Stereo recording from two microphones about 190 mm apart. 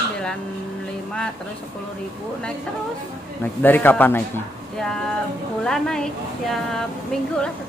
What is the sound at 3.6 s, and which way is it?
Speech, 10° left (ahead or behind).